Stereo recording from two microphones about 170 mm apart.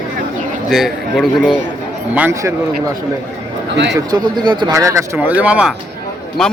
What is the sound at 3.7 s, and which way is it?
Speech, 90° right.